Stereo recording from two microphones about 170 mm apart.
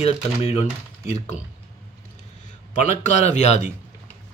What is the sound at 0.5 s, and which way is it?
Speech, 40° left (ahead or behind).